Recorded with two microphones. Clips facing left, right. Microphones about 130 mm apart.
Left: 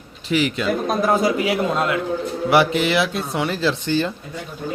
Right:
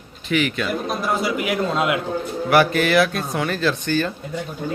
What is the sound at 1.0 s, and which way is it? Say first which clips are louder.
Speech: left 6 dB; 45° left (ahead or behind).